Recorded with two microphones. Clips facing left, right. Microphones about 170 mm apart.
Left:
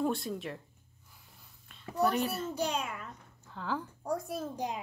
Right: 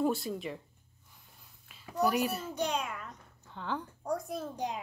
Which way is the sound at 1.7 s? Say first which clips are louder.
Even; 5° right (ahead or behind).